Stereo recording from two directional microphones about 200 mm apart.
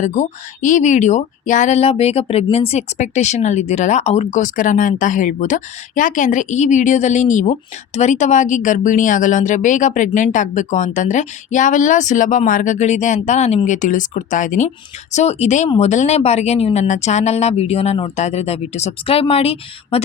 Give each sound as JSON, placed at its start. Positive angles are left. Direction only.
{"t": 0.0, "sound": "speech", "side_deg": 35}